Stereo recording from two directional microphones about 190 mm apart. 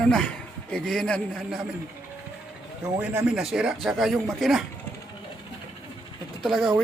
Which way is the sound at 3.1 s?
5° right (ahead or behind).